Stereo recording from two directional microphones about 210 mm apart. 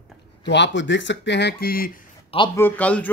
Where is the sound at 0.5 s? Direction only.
60° left (ahead or behind).